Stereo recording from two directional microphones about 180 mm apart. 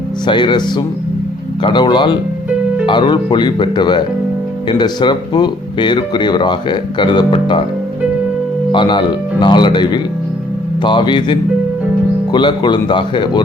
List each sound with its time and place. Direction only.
0.3 s speech: 25° left (ahead or behind)
8.7 s speech: 25° left (ahead or behind)